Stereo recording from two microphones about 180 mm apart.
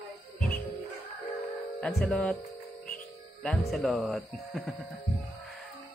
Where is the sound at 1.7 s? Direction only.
5° left (ahead or behind).